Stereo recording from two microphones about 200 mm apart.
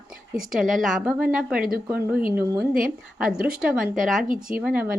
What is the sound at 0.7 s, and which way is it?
Speech, centre (ahead or behind).